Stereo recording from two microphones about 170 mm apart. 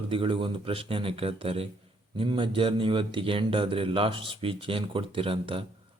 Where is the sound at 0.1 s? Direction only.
30° right (ahead or behind).